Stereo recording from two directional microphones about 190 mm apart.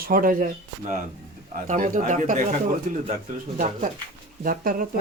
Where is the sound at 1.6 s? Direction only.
40° right (ahead or behind).